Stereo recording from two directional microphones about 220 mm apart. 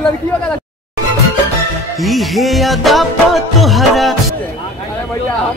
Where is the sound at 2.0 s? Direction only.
Centre (ahead or behind).